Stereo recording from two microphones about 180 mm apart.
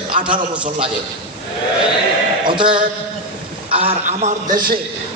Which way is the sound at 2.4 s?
25° right (ahead or behind).